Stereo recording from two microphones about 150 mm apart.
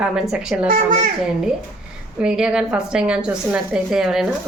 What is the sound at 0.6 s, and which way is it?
Speech, 70° right (ahead or behind).